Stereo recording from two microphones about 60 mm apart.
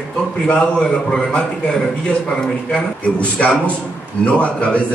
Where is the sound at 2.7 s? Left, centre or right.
Centre.